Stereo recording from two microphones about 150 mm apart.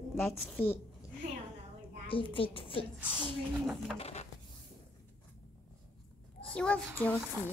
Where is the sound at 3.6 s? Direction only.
Centre (ahead or behind).